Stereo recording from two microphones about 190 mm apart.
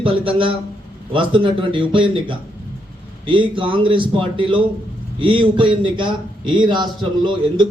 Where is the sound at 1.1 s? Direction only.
25° right (ahead or behind).